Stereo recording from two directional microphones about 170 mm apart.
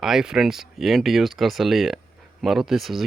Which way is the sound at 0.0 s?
5° right (ahead or behind).